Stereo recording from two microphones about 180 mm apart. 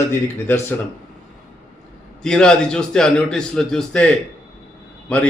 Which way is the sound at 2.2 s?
5° left (ahead or behind).